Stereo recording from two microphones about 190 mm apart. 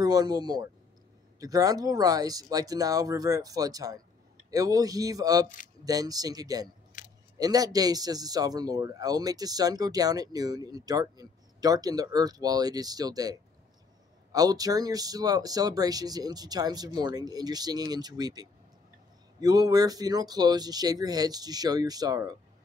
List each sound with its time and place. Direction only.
0.0 s speech: 20° right (ahead or behind)